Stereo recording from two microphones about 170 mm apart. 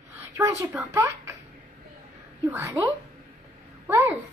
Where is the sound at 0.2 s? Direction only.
15° right (ahead or behind).